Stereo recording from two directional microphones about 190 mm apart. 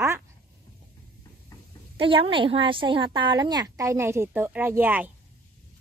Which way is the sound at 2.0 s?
25° right (ahead or behind).